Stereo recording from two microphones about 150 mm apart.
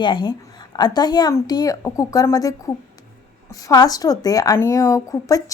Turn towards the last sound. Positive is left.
turn(degrees=20)  # may be behind; listen again after turning